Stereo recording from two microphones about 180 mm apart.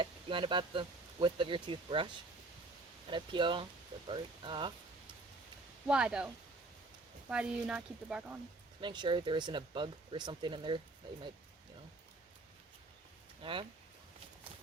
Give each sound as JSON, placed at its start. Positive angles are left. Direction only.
{"t": 0.0, "sound": "speech", "side_deg": -30}
{"t": 3.1, "sound": "speech", "side_deg": -25}
{"t": 5.9, "sound": "speech", "side_deg": -5}
{"t": 8.8, "sound": "speech", "side_deg": -25}
{"t": 13.4, "sound": "speech", "side_deg": -30}